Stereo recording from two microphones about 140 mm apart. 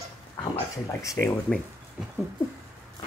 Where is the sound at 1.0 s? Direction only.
20° left (ahead or behind).